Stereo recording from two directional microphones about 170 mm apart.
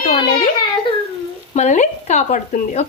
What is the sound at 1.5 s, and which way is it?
Speech, 45° left (ahead or behind).